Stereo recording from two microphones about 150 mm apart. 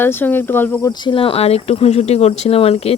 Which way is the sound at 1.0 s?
35° left (ahead or behind).